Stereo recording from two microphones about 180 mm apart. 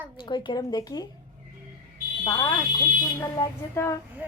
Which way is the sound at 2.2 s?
25° left (ahead or behind).